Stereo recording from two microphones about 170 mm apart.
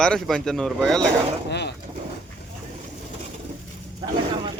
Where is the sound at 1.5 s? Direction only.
80° left.